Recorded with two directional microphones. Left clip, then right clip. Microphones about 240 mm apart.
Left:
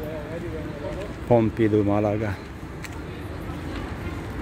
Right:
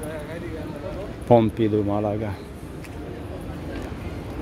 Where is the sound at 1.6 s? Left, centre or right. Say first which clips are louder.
Left 1 dB; centre.